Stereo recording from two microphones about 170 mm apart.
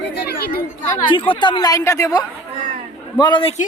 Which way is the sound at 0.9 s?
25° left (ahead or behind).